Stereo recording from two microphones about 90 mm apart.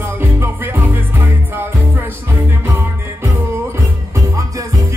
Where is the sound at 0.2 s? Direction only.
25° right (ahead or behind).